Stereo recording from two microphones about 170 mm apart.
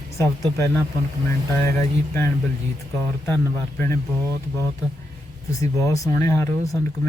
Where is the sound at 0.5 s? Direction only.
10° left (ahead or behind).